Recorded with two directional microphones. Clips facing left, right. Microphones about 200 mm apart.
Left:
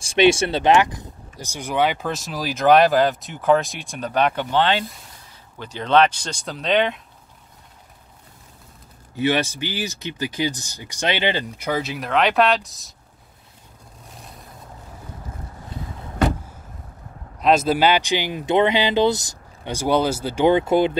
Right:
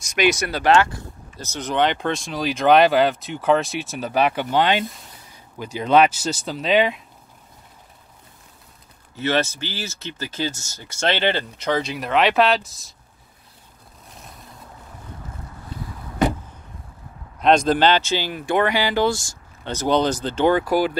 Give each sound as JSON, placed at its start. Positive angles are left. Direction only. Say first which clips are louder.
{"t": 0.0, "sound": "speech", "louder": "left 4 dB", "side_deg": 30}
{"t": 9.1, "sound": "speech", "louder": "left 1 dB", "side_deg": 15}
{"t": 17.4, "sound": "speech", "louder": "right 1 dB", "side_deg": 5}